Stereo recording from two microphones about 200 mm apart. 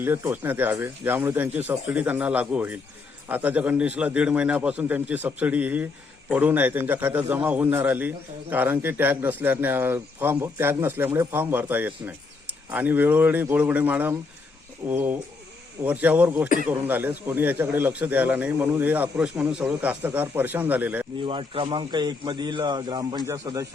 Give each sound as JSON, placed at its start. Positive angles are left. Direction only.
{"t": 0.0, "sound": "a man's voice", "side_deg": -10}
{"t": 21.2, "sound": "speech", "side_deg": -25}